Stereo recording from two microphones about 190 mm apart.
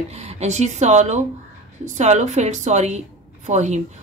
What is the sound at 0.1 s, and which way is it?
A woman's voice, 35° right (ahead or behind).